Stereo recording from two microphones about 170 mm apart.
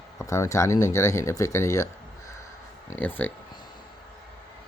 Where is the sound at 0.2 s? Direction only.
15° left (ahead or behind).